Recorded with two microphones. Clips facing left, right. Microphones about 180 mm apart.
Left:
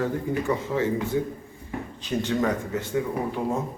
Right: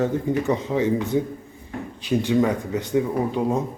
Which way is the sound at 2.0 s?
10° right (ahead or behind).